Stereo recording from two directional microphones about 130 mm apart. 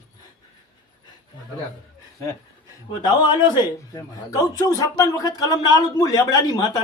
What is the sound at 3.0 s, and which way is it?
A man's voice, 35° left (ahead or behind).